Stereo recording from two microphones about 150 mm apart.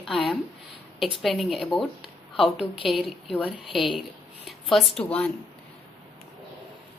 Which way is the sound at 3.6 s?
35° left (ahead or behind).